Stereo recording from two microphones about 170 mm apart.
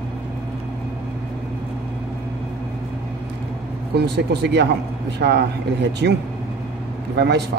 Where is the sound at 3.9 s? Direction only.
75° right (ahead or behind).